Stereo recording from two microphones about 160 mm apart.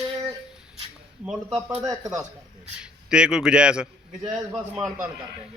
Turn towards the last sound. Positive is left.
turn(degrees=-5)  # may be behind; listen again after turning